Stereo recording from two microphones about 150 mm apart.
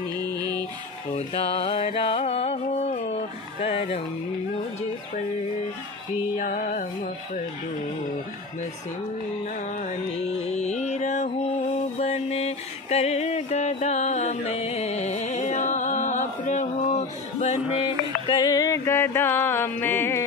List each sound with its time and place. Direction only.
0.2 s music: 25° right (ahead or behind)
1.1 s music: 40° left (ahead or behind)
3.6 s speech: 40° left (ahead or behind)
6.3 s music: 60° left (ahead or behind)
10.4 s music: 45° left (ahead or behind)
18.2 s music: 25° left (ahead or behind)